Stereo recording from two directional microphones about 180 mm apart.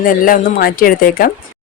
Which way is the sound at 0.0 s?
50° left (ahead or behind).